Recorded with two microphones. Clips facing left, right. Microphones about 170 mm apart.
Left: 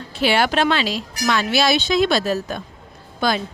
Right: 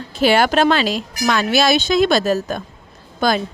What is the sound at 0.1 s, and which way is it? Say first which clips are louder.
Speech: right 4 dB; 45° right (ahead or behind).